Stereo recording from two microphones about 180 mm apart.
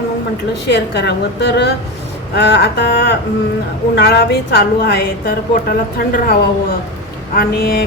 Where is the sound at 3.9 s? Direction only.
65° left (ahead or behind).